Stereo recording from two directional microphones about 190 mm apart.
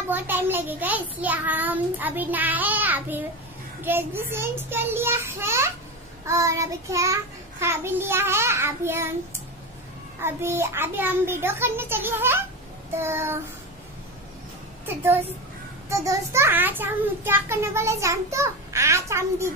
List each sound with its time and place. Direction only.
0.1 s a child's voice: 10° right (ahead or behind)
10.2 s a child's voice: 10° right (ahead or behind)
15.9 s a child's voice: 15° right (ahead or behind)